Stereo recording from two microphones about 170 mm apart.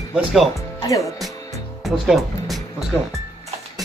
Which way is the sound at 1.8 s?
Centre (ahead or behind).